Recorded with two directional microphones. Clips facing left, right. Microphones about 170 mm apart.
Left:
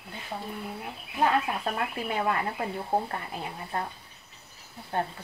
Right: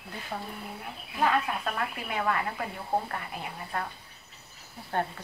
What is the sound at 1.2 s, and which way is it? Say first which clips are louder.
Speech: left 1 dB; 25° left (ahead or behind).